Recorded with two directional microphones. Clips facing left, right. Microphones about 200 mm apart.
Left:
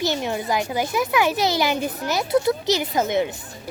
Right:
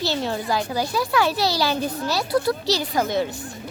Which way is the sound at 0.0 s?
15° left (ahead or behind).